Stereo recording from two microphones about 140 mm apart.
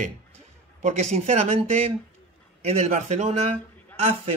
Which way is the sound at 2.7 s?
50° right (ahead or behind).